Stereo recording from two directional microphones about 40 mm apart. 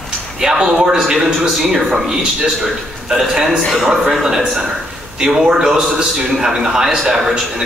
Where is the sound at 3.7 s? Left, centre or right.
Centre.